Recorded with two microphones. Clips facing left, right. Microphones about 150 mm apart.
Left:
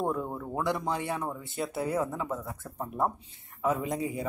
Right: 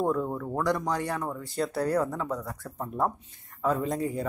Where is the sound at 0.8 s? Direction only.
25° left (ahead or behind).